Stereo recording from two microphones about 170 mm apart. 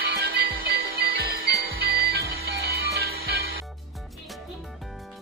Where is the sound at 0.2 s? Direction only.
70° right (ahead or behind).